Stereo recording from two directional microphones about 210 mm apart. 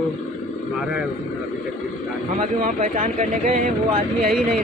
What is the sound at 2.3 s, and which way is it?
Speech, 40° right (ahead or behind).